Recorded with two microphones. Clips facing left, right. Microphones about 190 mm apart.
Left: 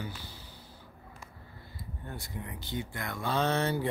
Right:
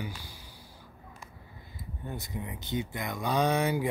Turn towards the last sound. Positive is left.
turn(degrees=-10)  # may be behind; listen again after turning